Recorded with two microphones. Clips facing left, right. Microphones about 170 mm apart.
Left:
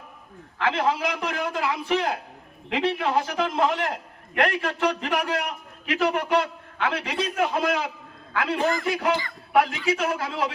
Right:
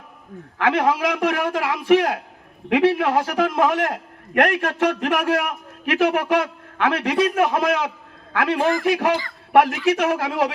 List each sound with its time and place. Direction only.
0.6 s a man's voice: 60° right (ahead or behind); by 10.5 s 75° right (ahead or behind)